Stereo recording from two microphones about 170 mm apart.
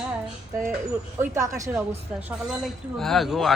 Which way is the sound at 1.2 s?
15° right (ahead or behind).